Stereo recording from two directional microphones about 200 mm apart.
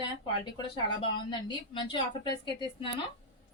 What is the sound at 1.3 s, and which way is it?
A woman's voice, 25° left (ahead or behind).